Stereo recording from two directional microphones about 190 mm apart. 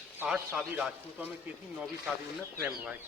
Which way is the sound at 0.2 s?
5° right (ahead or behind).